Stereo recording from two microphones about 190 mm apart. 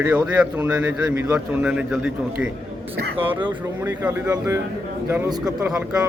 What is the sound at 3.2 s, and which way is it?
Speech, 25° right (ahead or behind).